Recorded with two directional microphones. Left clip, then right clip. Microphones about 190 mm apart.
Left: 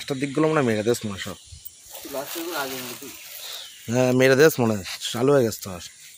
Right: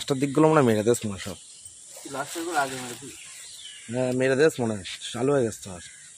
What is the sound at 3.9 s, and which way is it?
Speech, 35° left (ahead or behind).